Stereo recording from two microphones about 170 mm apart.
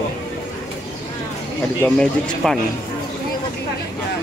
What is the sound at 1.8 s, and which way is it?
Speech, 5° left (ahead or behind).